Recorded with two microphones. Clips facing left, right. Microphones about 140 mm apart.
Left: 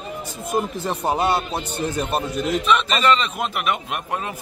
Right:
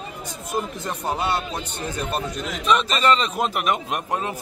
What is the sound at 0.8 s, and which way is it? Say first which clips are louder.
Speech: left 6 dB; 40° left (ahead or behind).